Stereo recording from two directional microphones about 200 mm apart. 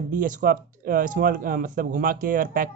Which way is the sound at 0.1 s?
40° right (ahead or behind).